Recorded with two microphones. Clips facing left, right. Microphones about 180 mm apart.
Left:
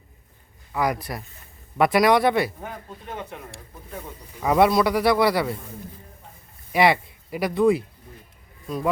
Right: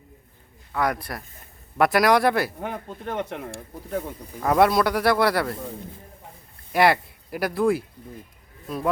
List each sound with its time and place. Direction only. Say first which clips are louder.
0.7 s speech: left 1 dB; centre (ahead or behind)
2.6 s speech: right 5 dB; 80° right
4.4 s speech: left 1 dB; centre (ahead or behind)
6.7 s speech: even; centre (ahead or behind)